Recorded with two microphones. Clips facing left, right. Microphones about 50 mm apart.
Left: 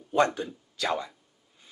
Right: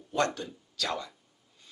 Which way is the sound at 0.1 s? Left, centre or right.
Centre.